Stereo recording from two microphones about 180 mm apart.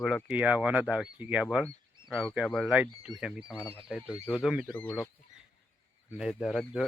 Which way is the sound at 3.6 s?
15° left (ahead or behind).